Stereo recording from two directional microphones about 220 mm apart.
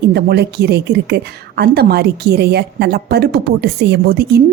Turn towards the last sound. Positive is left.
turn(degrees=-45)  # may be behind; listen again after turning